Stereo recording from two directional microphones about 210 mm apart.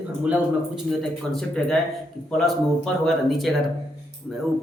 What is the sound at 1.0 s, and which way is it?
Speech, centre (ahead or behind).